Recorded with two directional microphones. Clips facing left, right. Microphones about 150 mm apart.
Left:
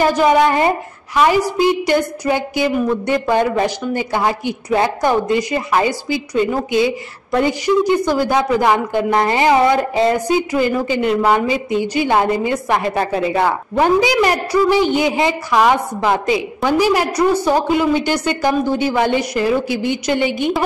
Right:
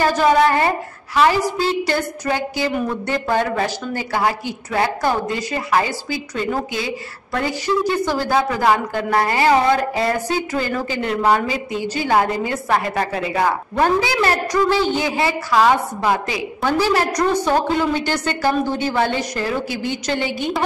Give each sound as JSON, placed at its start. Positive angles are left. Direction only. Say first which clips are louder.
{"t": 0.0, "sound": "a woman's voice", "louder": "left 2 dB", "side_deg": 15}